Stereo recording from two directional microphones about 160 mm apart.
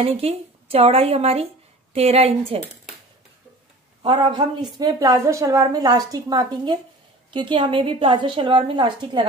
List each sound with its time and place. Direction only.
0.0 s a woman's voice: 40° right (ahead or behind)
4.0 s a woman's voice: 30° right (ahead or behind)